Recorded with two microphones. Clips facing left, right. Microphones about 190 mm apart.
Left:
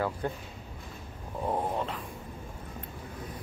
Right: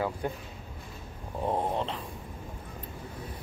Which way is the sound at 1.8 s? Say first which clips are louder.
Right 1 dB; 25° right (ahead or behind).